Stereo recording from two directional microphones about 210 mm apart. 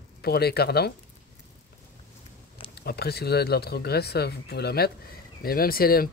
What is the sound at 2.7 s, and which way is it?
Speech, 50° left (ahead or behind).